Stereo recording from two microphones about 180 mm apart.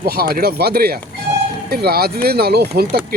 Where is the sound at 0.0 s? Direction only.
60° right (ahead or behind).